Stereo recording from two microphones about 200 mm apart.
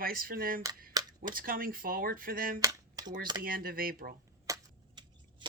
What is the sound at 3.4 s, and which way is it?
Speech, 45° right (ahead or behind).